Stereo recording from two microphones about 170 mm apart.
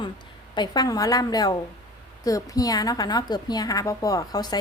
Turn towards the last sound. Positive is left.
turn(degrees=25)  # may be behind; listen again after turning